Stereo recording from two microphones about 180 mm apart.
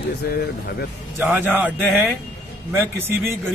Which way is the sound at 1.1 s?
10° right (ahead or behind).